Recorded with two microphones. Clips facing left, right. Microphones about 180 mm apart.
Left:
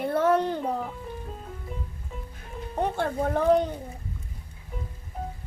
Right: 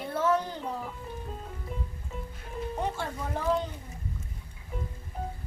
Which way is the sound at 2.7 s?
60° left (ahead or behind).